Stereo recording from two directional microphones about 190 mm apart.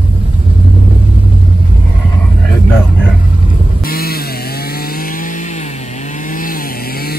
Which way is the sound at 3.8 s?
50° left (ahead or behind).